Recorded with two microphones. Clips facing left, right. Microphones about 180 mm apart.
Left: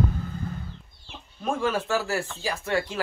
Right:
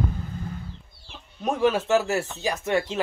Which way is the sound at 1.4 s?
20° right (ahead or behind).